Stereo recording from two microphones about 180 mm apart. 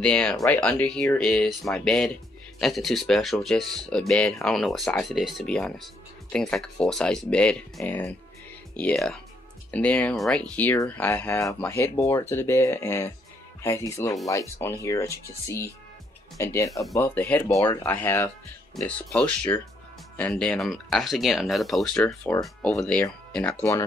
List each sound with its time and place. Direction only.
0.0 s speech: 5° left (ahead or behind)